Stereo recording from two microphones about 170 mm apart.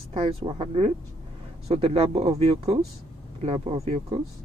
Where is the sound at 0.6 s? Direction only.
35° right (ahead or behind).